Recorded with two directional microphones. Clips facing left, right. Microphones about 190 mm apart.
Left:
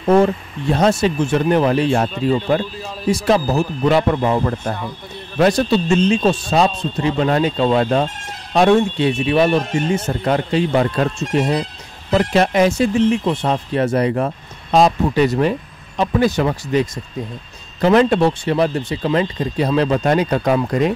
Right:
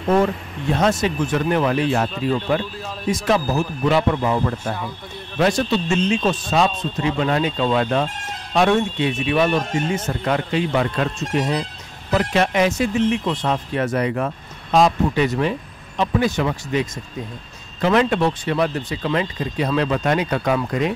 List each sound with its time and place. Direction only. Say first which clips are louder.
0.2 s speech: left 4 dB; 35° left (ahead or behind)
3.3 s speech: left 3 dB; 35° left (ahead or behind)